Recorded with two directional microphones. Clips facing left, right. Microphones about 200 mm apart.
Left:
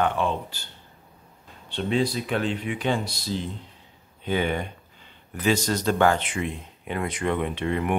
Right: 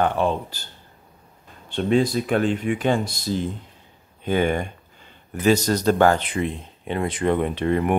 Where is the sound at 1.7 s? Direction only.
50° right (ahead or behind).